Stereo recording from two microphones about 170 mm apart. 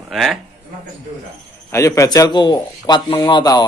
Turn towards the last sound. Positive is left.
turn(degrees=25)  # may be behind; listen again after turning